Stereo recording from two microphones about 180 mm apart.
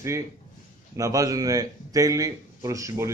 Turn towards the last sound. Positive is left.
turn(degrees=-20)  # may be behind; listen again after turning